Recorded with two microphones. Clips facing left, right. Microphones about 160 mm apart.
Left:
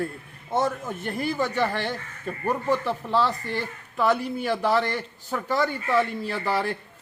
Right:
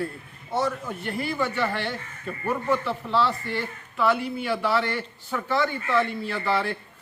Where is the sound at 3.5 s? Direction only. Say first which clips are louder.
Left 1 dB; 40° left (ahead or behind).